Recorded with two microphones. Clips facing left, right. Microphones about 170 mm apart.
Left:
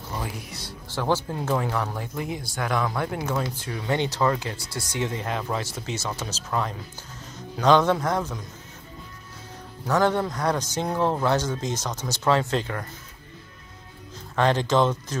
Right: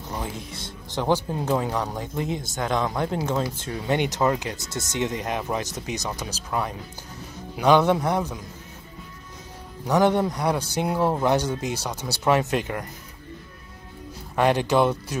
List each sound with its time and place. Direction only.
0.1 s a man's voice: 20° right (ahead or behind)
9.8 s a man's voice: 15° right (ahead or behind)
14.3 s a man's voice: 15° right (ahead or behind)